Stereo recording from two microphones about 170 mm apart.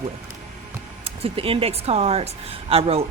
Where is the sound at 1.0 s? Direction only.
35° right (ahead or behind).